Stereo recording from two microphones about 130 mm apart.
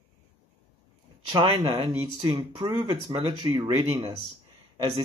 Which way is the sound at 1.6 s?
35° right (ahead or behind).